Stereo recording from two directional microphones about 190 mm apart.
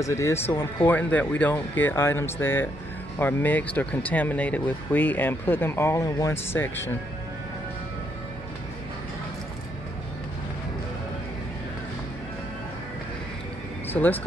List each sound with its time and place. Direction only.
0.0 s speech: 15° left (ahead or behind)
13.8 s speech: 10° left (ahead or behind)